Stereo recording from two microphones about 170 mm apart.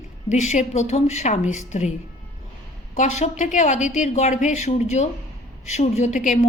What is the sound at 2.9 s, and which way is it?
A woman's voice, 45° left (ahead or behind).